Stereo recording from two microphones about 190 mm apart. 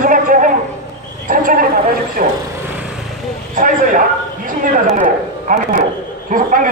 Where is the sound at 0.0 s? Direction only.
45° right (ahead or behind).